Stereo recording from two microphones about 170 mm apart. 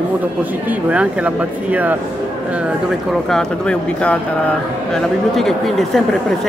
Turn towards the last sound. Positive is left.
turn(degrees=0)  # may be behind; listen again after turning